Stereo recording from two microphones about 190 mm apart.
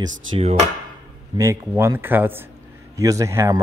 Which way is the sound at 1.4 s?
15° right (ahead or behind).